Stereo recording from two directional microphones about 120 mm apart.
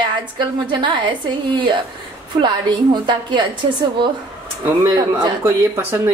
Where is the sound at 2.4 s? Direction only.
40° right (ahead or behind).